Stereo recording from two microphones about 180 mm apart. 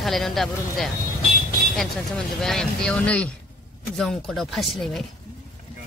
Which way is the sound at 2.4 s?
5° left (ahead or behind).